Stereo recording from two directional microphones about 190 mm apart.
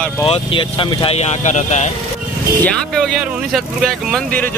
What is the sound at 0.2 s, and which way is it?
Speech, 25° left (ahead or behind).